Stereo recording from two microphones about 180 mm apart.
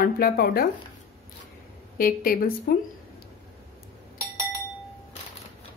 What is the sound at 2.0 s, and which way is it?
Speech, 50° left (ahead or behind).